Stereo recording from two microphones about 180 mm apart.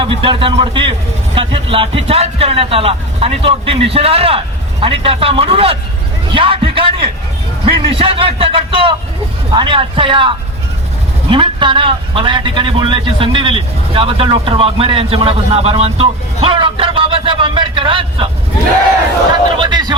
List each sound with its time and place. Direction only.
0.0 s a man's voice: 30° right (ahead or behind)
19.3 s a man's voice: 25° right (ahead or behind)